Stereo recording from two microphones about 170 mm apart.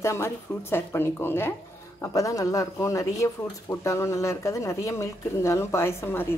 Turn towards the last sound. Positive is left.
turn(degrees=15)  # may be behind; listen again after turning